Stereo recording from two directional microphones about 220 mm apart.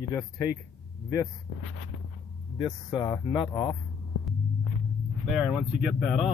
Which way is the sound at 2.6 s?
15° left (ahead or behind).